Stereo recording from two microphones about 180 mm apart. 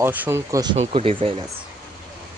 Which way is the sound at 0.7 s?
35° right (ahead or behind).